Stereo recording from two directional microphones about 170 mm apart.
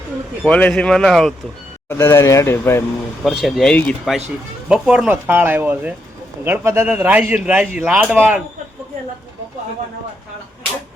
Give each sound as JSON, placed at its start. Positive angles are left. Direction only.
{"t": 0.4, "sound": "speech", "side_deg": 5}
{"t": 1.9, "sound": "speech", "side_deg": 15}
{"t": 3.2, "sound": "a man's voice", "side_deg": 0}